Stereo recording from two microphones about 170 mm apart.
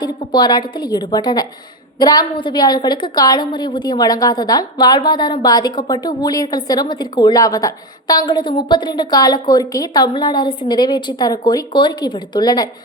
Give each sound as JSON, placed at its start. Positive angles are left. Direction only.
{"t": 0.0, "sound": "a woman's voice", "side_deg": 25}